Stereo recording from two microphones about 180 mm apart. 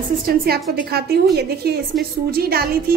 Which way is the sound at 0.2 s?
60° right (ahead or behind).